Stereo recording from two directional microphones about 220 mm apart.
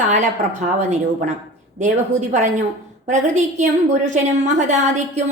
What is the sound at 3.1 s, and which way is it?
A woman's voice, 35° right (ahead or behind).